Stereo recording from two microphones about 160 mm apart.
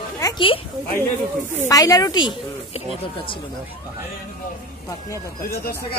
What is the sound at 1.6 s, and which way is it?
Speech, 20° left (ahead or behind).